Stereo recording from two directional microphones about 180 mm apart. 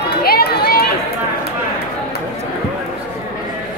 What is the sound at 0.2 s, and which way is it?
Run, 60° left (ahead or behind).